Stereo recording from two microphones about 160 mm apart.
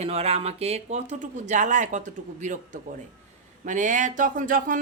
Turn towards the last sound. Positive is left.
turn(degrees=-55)  # may be behind; listen again after turning